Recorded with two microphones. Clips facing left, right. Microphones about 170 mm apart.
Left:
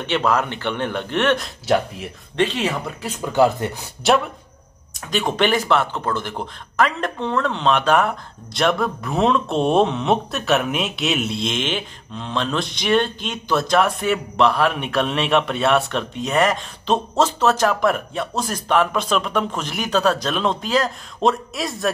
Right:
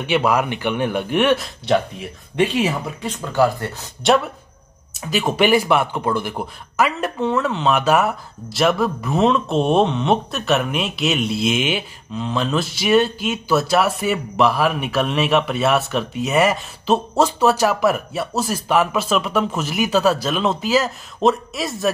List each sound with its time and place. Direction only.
0.0 s speech: 10° right (ahead or behind)
1.4 s speech: centre (ahead or behind)
2.3 s speech: 10° right (ahead or behind)
3.3 s speech: 20° left (ahead or behind)
4.0 s speech: centre (ahead or behind)